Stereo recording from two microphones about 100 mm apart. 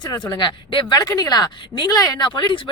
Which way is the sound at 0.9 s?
35° left (ahead or behind).